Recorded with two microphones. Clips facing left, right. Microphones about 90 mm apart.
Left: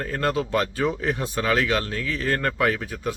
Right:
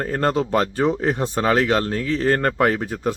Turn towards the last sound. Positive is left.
turn(degrees=-35)  # may be behind; listen again after turning